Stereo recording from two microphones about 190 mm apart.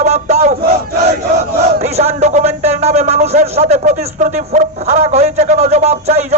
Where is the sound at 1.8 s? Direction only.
35° right (ahead or behind).